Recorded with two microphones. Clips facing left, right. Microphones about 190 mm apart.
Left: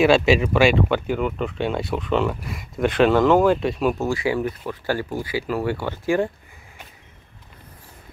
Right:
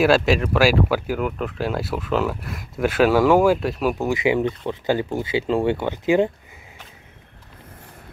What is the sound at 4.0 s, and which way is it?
Speech, 20° right (ahead or behind).